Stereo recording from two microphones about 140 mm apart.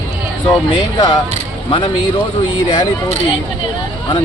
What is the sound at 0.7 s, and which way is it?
Speech, 30° left (ahead or behind).